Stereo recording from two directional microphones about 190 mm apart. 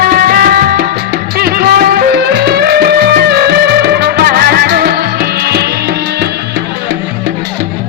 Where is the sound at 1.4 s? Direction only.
55° right (ahead or behind).